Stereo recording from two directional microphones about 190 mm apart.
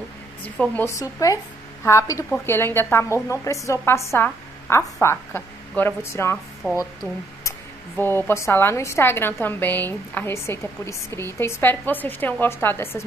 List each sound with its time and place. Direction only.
0.6 s a woman's voice: 10° left (ahead or behind)
8.0 s a woman's voice: 10° left (ahead or behind)